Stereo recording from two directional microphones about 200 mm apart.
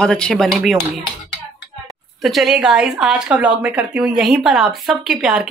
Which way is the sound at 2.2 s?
Centre (ahead or behind).